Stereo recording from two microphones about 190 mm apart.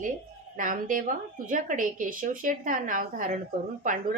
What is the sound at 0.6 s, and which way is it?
Speech, 45° right (ahead or behind).